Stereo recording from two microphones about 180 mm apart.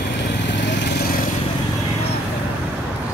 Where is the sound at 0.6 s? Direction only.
75° left (ahead or behind).